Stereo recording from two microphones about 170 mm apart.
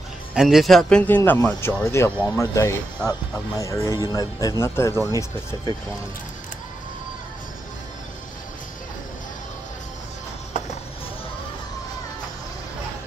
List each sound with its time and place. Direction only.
0.3 s speech: 5° right (ahead or behind); by 5.1 s 15° left (ahead or behind)